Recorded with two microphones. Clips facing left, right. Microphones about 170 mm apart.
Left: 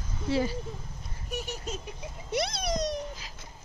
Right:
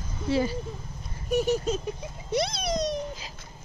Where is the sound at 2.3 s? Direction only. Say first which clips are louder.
Right 3 dB; 30° right (ahead or behind).